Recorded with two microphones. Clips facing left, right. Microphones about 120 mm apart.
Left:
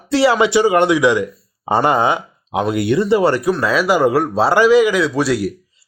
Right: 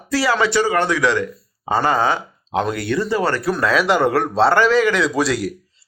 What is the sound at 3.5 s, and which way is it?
A man's voice, centre (ahead or behind).